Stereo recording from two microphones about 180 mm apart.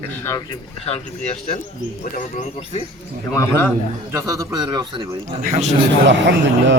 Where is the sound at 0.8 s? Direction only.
35° left (ahead or behind).